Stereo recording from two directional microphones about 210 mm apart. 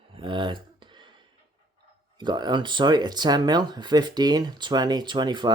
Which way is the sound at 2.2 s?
20° right (ahead or behind).